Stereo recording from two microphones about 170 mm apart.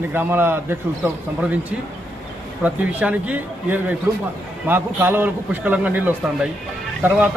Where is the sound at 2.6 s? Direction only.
10° right (ahead or behind).